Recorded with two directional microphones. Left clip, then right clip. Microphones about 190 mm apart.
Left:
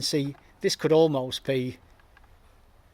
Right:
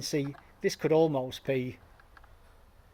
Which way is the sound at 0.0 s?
45° left (ahead or behind).